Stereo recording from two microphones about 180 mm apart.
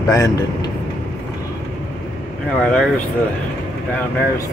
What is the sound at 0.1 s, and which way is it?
Speech, 20° left (ahead or behind).